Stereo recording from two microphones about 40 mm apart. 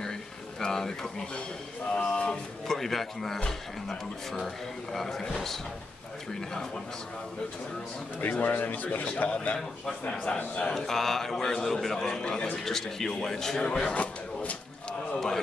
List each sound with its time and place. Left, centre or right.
0.6 s speech: centre
2.0 s speech: left
2.7 s a man's voice: centre
4.9 s a man's voice: centre
8.2 s speech: left
9.3 s a man's voice: left
10.7 s a man's voice: centre
12.6 s a man's voice: centre
13.7 s speech: left
15.1 s a man's voice: centre